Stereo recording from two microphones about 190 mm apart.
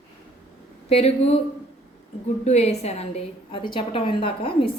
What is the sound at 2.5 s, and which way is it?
A woman's voice, 35° left (ahead or behind).